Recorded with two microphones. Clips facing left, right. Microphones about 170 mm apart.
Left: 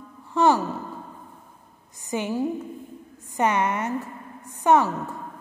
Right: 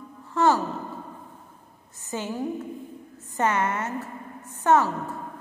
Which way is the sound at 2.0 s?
15° left (ahead or behind).